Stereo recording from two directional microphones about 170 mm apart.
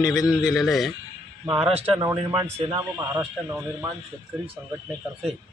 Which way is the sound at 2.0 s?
15° right (ahead or behind).